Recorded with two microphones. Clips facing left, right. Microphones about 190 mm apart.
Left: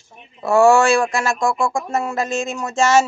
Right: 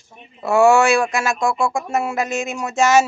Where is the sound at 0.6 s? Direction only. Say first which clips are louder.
Even; 20° right (ahead or behind).